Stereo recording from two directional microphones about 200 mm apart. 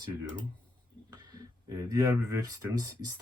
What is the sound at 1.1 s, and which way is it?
Speech, 20° right (ahead or behind).